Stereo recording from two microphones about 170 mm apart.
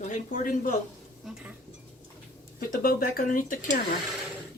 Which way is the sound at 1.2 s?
5° right (ahead or behind).